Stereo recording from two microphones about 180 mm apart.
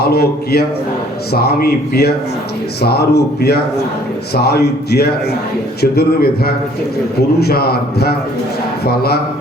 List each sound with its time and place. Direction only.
0.0 s a man's voice: 60° left (ahead or behind)